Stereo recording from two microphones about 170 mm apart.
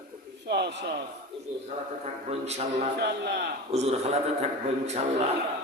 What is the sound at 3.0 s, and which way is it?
Speech, 75° right (ahead or behind).